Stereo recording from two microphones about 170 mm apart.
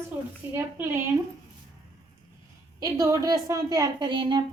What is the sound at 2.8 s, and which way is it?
A woman's voice, 20° right (ahead or behind).